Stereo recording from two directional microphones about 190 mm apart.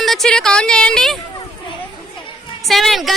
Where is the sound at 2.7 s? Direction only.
Centre (ahead or behind).